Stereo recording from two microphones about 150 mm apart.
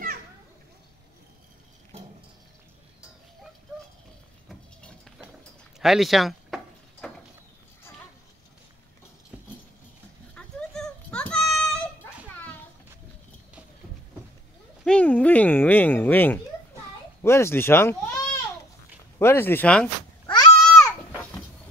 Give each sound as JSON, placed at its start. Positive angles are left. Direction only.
{"t": 4.5, "sound": "cutlery", "side_deg": 0}
{"t": 5.8, "sound": "door", "side_deg": 0}
{"t": 10.3, "sound": "a sound", "side_deg": 5}
{"t": 14.9, "sound": "a sound", "side_deg": 10}
{"t": 17.2, "sound": "speech", "side_deg": 15}
{"t": 20.2, "sound": "babbling", "side_deg": 25}